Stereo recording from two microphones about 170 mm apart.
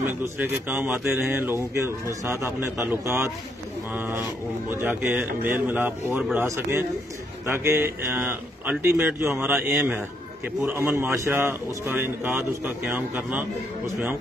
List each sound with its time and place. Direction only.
0.2 s speech: 10° right (ahead or behind)